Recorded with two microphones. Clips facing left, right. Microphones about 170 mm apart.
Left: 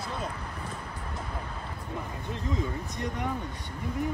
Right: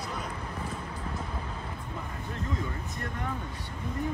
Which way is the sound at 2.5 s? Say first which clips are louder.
Left 3 dB; 15° left (ahead or behind).